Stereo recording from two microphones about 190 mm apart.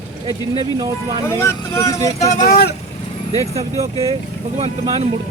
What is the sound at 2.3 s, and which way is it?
Speech, 45° left (ahead or behind).